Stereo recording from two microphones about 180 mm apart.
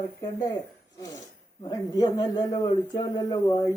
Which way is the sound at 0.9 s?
20° left (ahead or behind).